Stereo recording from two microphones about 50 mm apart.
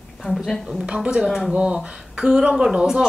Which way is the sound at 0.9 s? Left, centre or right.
Right.